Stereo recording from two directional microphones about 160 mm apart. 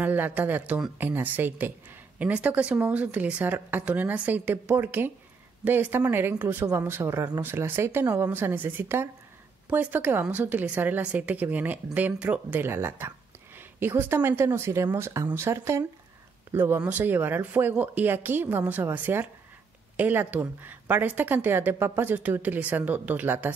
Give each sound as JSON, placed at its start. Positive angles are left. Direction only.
{"t": 0.0, "sound": "a woman's voice", "side_deg": -10}